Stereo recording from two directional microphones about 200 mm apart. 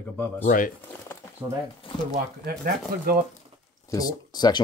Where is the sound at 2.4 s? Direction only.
50° right (ahead or behind).